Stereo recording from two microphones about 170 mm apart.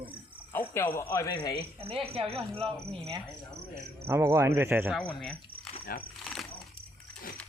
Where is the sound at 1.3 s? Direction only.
25° left (ahead or behind).